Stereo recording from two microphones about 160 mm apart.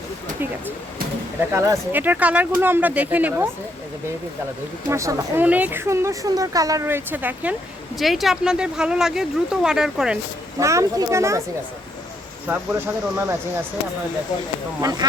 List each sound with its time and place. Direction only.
1.5 s a woman's voice: 20° right (ahead or behind)
4.9 s a woman's voice: 20° right (ahead or behind)
10.6 s speech: 20° right (ahead or behind)
12.5 s a woman's voice: 15° right (ahead or behind)
14.8 s speech: 25° right (ahead or behind)